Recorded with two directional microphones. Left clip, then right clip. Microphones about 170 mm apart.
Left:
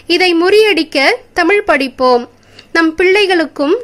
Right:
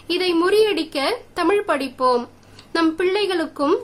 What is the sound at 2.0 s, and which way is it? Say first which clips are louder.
Speech: left 7 dB; 15° left (ahead or behind).